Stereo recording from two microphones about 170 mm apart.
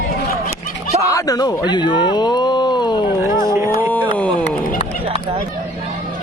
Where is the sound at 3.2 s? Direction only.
15° right (ahead or behind).